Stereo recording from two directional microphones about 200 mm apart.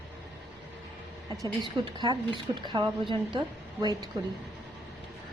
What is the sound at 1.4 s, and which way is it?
A woman's voice, 25° right (ahead or behind).